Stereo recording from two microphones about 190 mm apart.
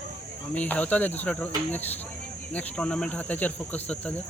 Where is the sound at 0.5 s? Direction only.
10° left (ahead or behind).